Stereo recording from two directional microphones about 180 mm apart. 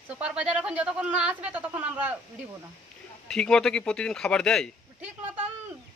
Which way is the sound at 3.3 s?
5° left (ahead or behind).